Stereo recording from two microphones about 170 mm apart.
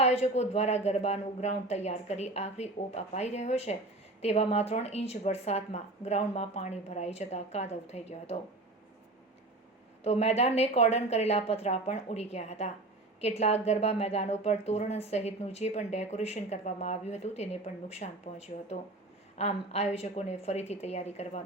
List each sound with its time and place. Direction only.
0.0 s speech: 40° left (ahead or behind)
10.0 s speech: 40° left (ahead or behind)